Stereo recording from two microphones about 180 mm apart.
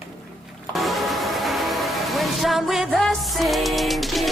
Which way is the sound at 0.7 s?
Centre (ahead or behind).